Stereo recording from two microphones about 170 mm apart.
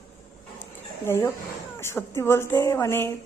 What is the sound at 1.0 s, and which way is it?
Speech, 15° left (ahead or behind).